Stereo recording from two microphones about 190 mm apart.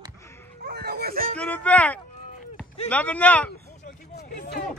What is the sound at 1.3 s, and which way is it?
Speech, 10° left (ahead or behind).